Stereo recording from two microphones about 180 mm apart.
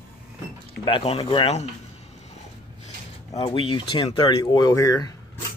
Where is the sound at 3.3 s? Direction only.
30° left (ahead or behind).